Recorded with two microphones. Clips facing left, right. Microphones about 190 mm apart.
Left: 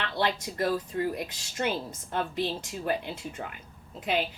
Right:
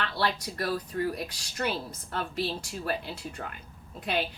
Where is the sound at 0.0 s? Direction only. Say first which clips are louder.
Left 1 dB; 20° left (ahead or behind).